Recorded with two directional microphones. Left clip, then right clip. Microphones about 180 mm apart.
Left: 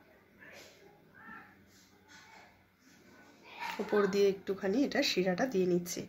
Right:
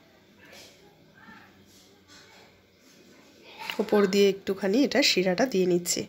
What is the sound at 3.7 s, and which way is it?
Speech, 40° right (ahead or behind).